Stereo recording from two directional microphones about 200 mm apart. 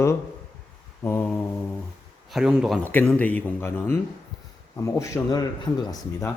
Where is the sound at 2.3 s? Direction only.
5° right (ahead or behind); by 6.3 s 15° left (ahead or behind).